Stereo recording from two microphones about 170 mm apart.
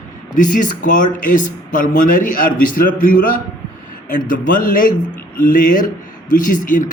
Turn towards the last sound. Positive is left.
turn(degrees=50)  # may be behind; listen again after turning